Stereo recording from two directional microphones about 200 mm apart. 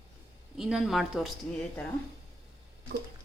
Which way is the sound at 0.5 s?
Centre (ahead or behind).